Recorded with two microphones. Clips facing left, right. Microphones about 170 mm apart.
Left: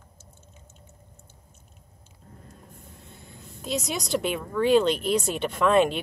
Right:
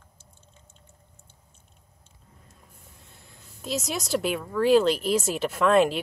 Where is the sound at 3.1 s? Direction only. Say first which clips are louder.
Left 7 dB; centre (ahead or behind).